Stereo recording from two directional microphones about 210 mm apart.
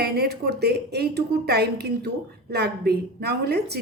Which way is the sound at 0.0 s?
50° right (ahead or behind).